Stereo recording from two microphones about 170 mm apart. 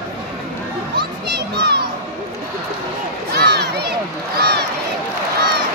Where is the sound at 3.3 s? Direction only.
75° right (ahead or behind).